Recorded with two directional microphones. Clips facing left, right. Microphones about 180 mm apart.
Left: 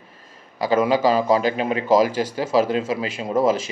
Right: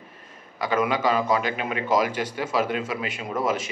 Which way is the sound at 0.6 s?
35° left (ahead or behind).